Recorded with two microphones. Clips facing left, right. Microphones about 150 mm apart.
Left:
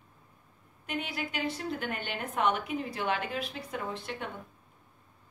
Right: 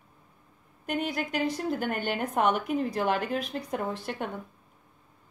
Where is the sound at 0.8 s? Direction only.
45° right (ahead or behind).